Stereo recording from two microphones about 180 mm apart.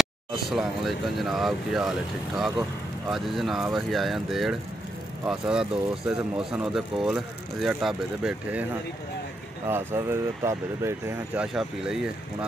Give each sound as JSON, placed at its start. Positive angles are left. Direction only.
{"t": 0.0, "sound": "speech", "side_deg": 0}
{"t": 9.7, "sound": "speech", "side_deg": -15}
{"t": 11.4, "sound": "speech", "side_deg": -5}